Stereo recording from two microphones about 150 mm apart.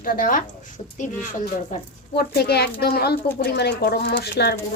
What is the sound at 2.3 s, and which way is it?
Speech, 90° left.